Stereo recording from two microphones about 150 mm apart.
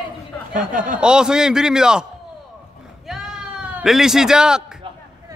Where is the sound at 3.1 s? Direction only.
5° right (ahead or behind).